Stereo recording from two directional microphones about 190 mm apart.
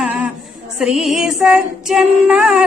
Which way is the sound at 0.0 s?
10° right (ahead or behind).